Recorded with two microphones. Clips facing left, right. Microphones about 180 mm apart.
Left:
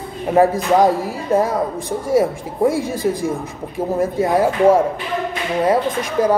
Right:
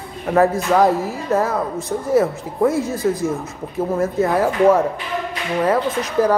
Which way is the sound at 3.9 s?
15° left (ahead or behind).